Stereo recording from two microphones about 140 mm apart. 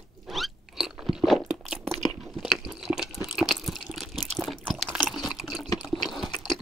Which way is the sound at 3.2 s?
Centre (ahead or behind).